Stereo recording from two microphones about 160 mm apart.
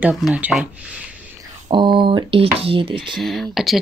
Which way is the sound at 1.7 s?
30° right (ahead or behind).